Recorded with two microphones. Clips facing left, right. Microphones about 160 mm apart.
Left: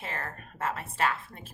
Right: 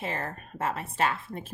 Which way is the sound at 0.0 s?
20° right (ahead or behind).